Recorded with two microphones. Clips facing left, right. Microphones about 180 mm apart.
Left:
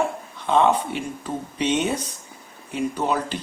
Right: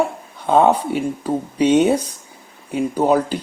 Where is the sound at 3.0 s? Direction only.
35° right (ahead or behind).